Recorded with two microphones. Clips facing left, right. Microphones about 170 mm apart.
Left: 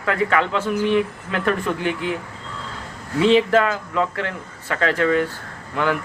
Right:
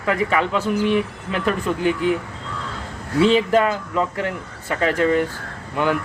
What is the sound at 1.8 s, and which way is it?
Speech, 20° left (ahead or behind).